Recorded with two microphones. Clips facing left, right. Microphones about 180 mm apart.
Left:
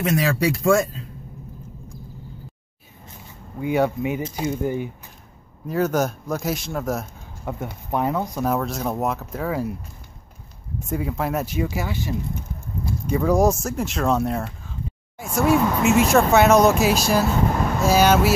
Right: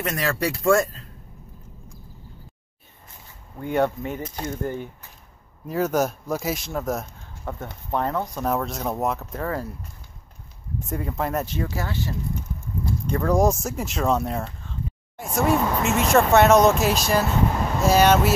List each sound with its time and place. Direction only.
0.0 s speech: 5° left (ahead or behind)
3.5 s speech: 5° left (ahead or behind)
5.7 s speech: centre (ahead or behind)
10.9 s speech: centre (ahead or behind)